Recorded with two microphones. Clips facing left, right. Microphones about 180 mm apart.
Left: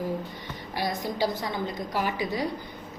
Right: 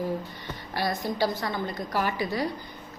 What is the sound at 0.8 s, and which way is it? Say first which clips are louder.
A woman's voice: right 1 dB; 15° left (ahead or behind).